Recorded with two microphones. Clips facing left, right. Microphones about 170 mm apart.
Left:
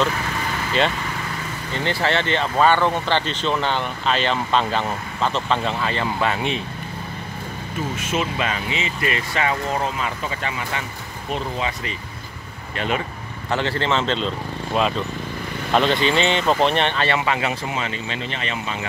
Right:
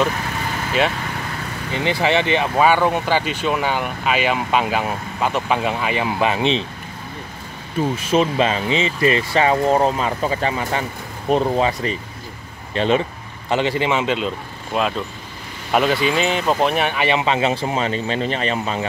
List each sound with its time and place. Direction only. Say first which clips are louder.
1.7 s speech: right 3 dB; 15° right (ahead or behind)
8.0 s speech: right 7 dB; 35° right (ahead or behind)
12.7 s speech: right 7 dB; 25° right (ahead or behind)
13.5 s speech: right 3 dB; 15° right (ahead or behind); by 18.9 s 40° right (ahead or behind)